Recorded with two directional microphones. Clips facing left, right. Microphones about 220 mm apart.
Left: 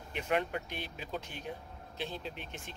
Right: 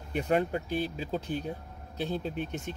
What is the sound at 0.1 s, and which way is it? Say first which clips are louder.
Speech: right 6 dB; 40° right (ahead or behind).